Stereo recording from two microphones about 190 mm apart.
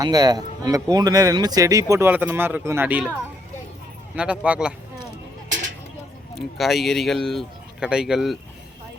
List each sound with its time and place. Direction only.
0.0 s speech: 20° right (ahead or behind)
4.1 s speech: 5° right (ahead or behind)
6.3 s speech: centre (ahead or behind)